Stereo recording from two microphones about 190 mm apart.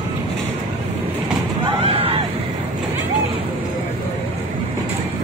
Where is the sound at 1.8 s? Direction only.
30° right (ahead or behind).